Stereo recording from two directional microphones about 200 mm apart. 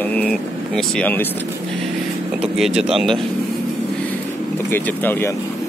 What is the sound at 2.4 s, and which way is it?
Speech, 5° right (ahead or behind).